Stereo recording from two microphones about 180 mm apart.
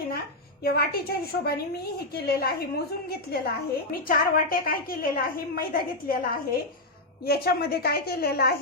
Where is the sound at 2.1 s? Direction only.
60° left (ahead or behind).